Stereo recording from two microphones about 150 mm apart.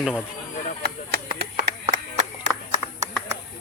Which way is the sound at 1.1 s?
90° right.